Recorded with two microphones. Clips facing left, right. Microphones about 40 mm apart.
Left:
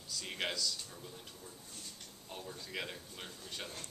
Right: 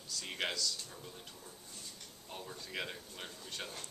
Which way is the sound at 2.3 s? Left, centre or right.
Centre.